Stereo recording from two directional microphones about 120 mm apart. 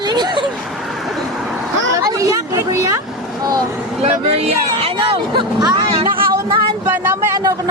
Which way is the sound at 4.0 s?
60° right (ahead or behind).